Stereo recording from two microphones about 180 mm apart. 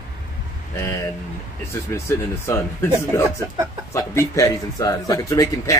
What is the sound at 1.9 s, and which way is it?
Speech, 15° left (ahead or behind).